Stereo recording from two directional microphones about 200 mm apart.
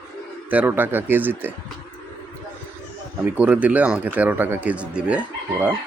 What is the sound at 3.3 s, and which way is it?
Speech, 5° right (ahead or behind).